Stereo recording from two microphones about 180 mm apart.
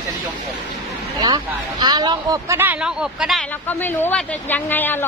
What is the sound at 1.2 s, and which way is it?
Speech, 20° right (ahead or behind).